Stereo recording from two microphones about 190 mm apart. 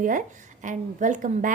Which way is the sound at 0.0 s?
45° right (ahead or behind).